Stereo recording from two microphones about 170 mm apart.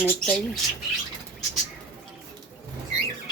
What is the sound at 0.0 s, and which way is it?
Speech, 10° left (ahead or behind).